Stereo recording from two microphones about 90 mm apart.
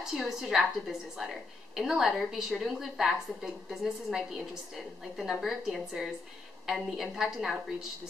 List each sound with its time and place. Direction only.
0.0 s a woman's voice: 5° right (ahead or behind)